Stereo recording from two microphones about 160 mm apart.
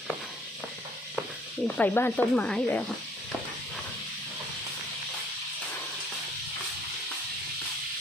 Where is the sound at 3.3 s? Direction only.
5° left (ahead or behind).